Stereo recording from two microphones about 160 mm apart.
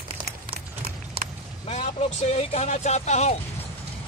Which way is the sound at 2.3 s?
45° left (ahead or behind).